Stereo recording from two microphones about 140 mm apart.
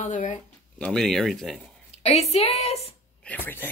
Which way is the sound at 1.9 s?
50° left (ahead or behind).